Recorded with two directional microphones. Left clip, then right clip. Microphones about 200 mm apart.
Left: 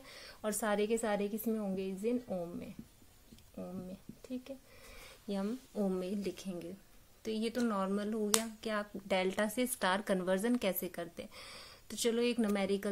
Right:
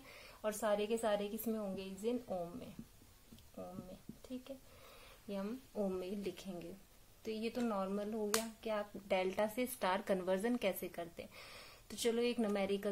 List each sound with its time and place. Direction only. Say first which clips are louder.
0.1 s a woman's voice: left 2 dB; 35° left (ahead or behind)
5.3 s a woman's voice: left 4 dB; 35° left (ahead or behind)